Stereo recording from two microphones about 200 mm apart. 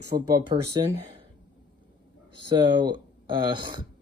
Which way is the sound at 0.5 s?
25° right (ahead or behind).